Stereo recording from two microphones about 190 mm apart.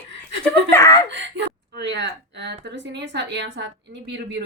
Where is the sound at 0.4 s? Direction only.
15° left (ahead or behind).